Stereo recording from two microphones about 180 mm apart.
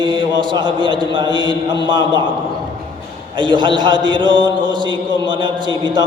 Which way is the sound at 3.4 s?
25° right (ahead or behind).